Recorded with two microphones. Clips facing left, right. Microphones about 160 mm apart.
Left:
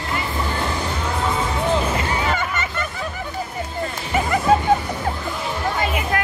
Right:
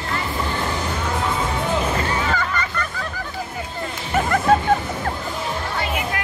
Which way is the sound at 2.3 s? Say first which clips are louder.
Even; 25° left (ahead or behind).